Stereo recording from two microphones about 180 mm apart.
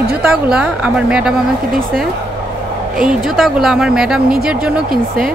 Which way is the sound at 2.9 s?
Centre (ahead or behind).